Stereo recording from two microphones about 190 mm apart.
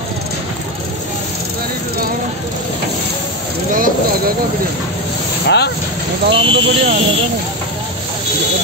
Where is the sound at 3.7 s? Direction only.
45° right (ahead or behind).